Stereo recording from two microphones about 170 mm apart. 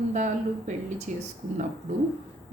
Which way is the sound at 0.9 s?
45° right (ahead or behind).